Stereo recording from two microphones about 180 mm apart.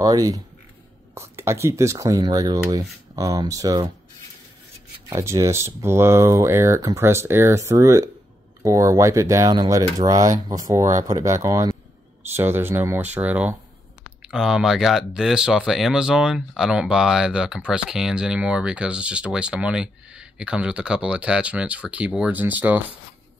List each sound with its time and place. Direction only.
0.0 s speech: 20° right (ahead or behind)
5.1 s speech: 15° right (ahead or behind)